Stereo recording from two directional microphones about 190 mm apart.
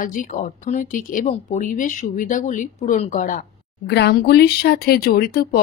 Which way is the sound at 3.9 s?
60° left (ahead or behind).